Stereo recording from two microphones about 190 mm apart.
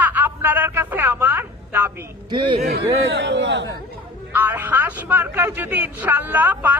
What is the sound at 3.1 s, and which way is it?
Speech, 65° right (ahead or behind).